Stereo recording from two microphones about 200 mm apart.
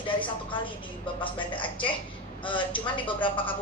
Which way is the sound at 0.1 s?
25° left (ahead or behind).